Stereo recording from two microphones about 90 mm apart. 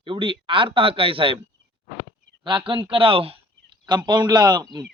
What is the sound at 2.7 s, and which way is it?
Speech, 70° right (ahead or behind).